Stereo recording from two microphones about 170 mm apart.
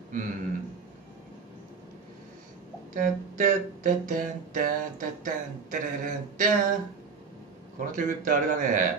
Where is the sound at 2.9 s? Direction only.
50° right (ahead or behind).